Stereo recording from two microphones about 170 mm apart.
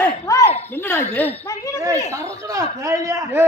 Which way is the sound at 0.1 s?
20° left (ahead or behind).